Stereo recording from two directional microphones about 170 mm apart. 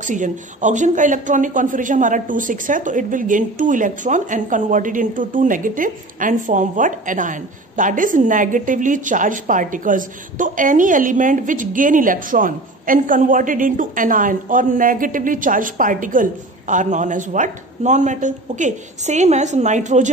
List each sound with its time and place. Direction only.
0.0 s speech: 45° right (ahead or behind)